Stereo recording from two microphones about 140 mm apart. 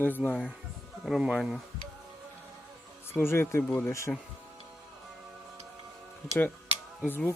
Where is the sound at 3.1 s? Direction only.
15° left (ahead or behind).